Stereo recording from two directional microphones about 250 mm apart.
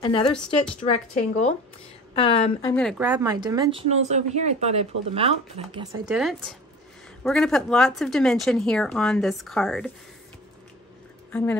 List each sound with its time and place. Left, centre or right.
0.0 s speech: centre
2.7 s speech: centre
3.0 s speech: centre
6.0 s speech: centre